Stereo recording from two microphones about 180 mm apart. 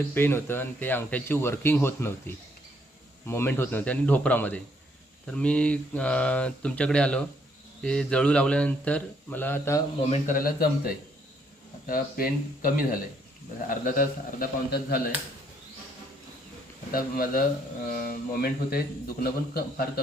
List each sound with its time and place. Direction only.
0.1 s speech: 10° left (ahead or behind)
10.1 s a man's voice: 50° left (ahead or behind)
16.9 s a man's voice: 50° left (ahead or behind)